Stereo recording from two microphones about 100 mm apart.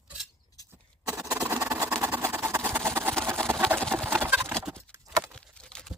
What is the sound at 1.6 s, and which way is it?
Vehicle, 30° right (ahead or behind).